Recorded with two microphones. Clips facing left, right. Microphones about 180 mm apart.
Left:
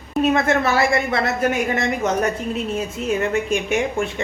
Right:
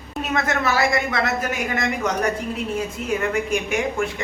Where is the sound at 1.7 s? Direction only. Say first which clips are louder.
Left 3 dB; 25° left (ahead or behind).